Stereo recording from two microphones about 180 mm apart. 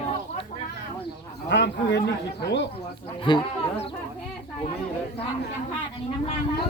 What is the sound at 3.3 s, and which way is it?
Speech, 25° left (ahead or behind).